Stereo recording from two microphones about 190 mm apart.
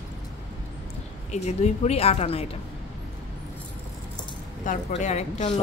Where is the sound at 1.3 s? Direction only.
35° left (ahead or behind).